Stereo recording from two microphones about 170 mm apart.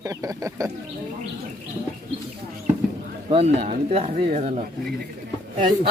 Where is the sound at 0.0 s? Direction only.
20° right (ahead or behind).